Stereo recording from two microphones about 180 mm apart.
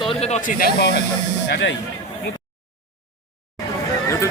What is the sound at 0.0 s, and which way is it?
Speech, 30° left (ahead or behind).